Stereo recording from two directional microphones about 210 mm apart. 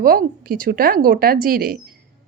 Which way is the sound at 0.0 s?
45° right (ahead or behind).